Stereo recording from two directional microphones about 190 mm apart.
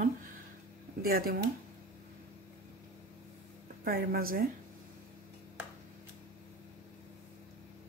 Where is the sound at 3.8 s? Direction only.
50° right (ahead or behind).